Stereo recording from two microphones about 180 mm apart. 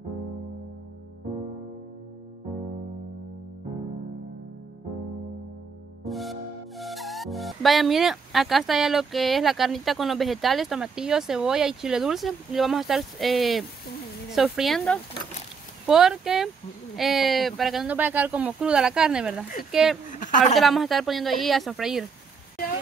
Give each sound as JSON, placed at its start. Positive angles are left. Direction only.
{"t": 6.0, "sound": "music", "side_deg": 0}
{"t": 6.8, "sound": "speech", "side_deg": 0}
{"t": 20.1, "sound": "a sound", "side_deg": 45}
{"t": 20.5, "sound": "speech", "side_deg": 0}